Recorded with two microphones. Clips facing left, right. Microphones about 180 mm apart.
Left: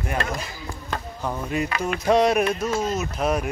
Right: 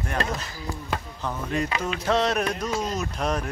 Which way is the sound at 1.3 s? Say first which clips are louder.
Left 1 dB; 10° left (ahead or behind).